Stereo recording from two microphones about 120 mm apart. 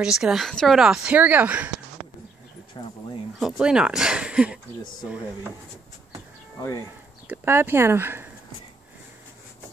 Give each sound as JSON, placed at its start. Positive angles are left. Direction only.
{"t": 0.0, "sound": "speech", "side_deg": -5}
{"t": 2.0, "sound": "bird", "side_deg": 0}
{"t": 2.8, "sound": "speech", "side_deg": 45}
{"t": 3.3, "sound": "speech", "side_deg": -5}
{"t": 7.2, "sound": "speech", "side_deg": -20}